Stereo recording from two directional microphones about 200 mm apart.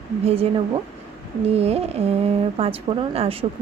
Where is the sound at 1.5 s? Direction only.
30° right (ahead or behind).